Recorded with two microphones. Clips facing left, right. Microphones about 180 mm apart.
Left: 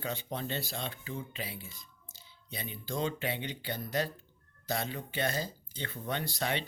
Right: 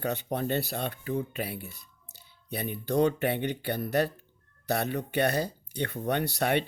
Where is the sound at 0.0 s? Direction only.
60° right (ahead or behind).